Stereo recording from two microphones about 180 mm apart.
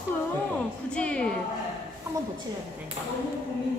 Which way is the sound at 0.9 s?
5° left (ahead or behind).